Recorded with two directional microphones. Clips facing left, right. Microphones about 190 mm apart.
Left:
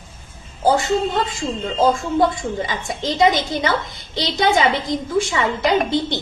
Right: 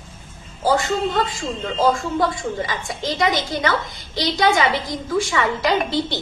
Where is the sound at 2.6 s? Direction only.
20° left (ahead or behind).